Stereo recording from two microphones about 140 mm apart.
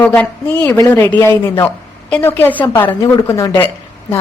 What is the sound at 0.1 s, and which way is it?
A woman's voice, 10° left (ahead or behind).